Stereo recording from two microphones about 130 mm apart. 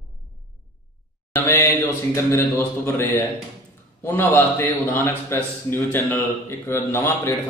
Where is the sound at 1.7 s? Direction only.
20° left (ahead or behind).